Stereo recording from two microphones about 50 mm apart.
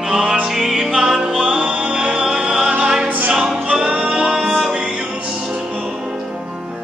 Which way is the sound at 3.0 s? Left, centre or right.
Right.